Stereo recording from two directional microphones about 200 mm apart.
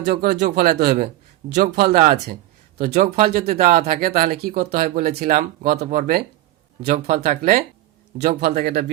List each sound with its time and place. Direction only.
0.1 s speech: 45° right (ahead or behind)